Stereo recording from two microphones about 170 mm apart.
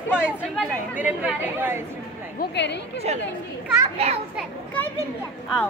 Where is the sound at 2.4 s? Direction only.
90° left.